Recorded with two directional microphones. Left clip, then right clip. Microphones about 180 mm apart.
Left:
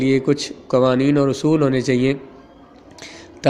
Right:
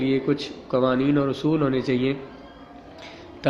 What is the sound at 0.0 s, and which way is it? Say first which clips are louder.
A man's voice: left 5 dB; 40° left (ahead or behind).